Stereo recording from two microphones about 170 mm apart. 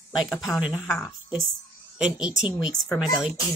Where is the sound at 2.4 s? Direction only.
5° right (ahead or behind).